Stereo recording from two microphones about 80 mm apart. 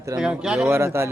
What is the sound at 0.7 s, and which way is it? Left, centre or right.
Speech, right.